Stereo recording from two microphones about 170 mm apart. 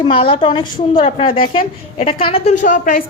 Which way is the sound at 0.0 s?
30° left (ahead or behind).